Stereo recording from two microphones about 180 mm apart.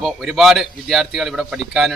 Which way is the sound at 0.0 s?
Centre (ahead or behind).